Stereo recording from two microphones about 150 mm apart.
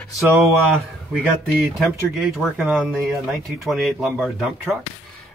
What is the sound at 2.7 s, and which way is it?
Speech, 10° right (ahead or behind).